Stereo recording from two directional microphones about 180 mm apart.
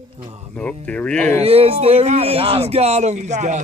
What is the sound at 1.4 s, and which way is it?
Speech, 35° right (ahead or behind).